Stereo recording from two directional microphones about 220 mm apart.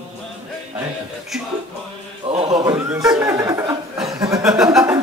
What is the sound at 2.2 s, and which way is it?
Chant, 25° right (ahead or behind).